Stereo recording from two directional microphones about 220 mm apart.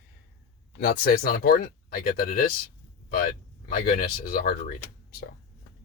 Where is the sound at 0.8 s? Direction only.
45° left (ahead or behind).